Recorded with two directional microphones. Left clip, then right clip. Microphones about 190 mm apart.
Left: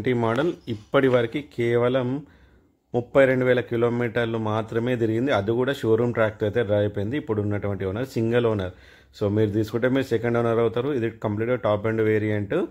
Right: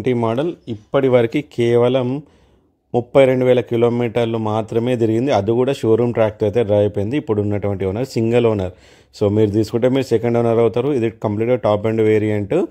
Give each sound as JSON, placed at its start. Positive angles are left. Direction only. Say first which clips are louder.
{"t": 0.0, "sound": "speech", "louder": "right 5 dB", "side_deg": -20}
{"t": 0.7, "sound": "speech", "louder": "right 4 dB", "side_deg": -10}
{"t": 1.1, "sound": "speech", "louder": "right 7 dB", "side_deg": -40}